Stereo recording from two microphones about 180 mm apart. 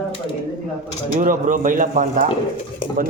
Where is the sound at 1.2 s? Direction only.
45° right (ahead or behind).